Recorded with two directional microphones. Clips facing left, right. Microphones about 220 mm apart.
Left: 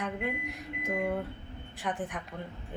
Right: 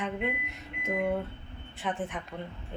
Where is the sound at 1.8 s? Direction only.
Centre (ahead or behind).